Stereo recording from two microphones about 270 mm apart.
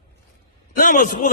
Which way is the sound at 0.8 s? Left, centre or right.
Left.